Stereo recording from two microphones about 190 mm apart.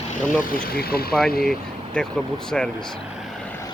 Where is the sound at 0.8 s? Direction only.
55° left (ahead or behind).